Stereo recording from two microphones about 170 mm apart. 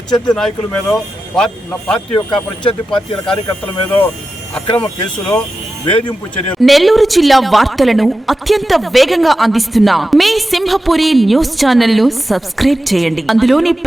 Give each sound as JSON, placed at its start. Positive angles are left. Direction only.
{"t": 0.1, "sound": "speech", "side_deg": 5}
{"t": 2.1, "sound": "speech", "side_deg": 30}
{"t": 2.9, "sound": "speech", "side_deg": 5}
{"t": 4.5, "sound": "speech", "side_deg": 5}